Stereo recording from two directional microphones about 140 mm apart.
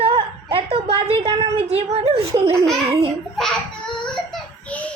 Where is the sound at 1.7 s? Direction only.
45° right (ahead or behind).